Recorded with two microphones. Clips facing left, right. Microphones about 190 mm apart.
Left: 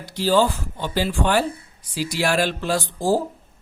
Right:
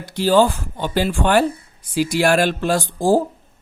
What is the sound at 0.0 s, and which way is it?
Speech, 55° right (ahead or behind).